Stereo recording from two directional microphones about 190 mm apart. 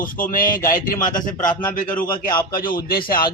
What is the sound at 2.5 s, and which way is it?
Speech, 50° left (ahead or behind).